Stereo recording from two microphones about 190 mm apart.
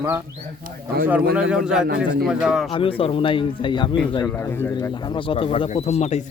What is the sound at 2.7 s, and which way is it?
Speech, 25° left (ahead or behind).